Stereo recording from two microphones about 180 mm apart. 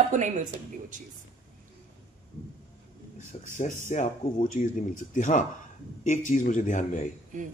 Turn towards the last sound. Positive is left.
turn(degrees=45)  # may be behind; listen again after turning